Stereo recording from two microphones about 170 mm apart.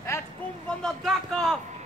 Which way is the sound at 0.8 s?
5° left (ahead or behind).